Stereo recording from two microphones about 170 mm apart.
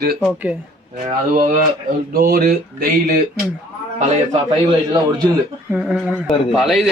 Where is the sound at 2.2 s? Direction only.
60° right (ahead or behind).